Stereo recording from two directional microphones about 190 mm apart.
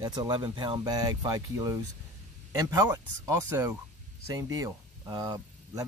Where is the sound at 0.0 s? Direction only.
20° right (ahead or behind).